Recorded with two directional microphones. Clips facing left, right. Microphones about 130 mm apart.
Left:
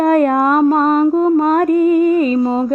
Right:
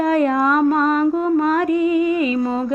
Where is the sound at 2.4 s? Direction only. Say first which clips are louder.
Left 5 dB; 30° left (ahead or behind).